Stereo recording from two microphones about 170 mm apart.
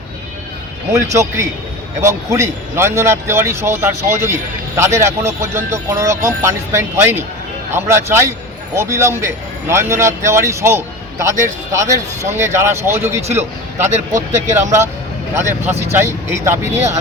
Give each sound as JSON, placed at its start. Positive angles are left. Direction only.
{"t": 1.1, "sound": "a man's voice", "side_deg": -15}
{"t": 13.9, "sound": "speech", "side_deg": -45}
{"t": 15.4, "sound": "speech", "side_deg": -15}